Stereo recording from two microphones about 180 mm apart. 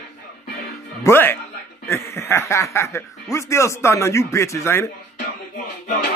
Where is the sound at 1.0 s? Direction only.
10° left (ahead or behind).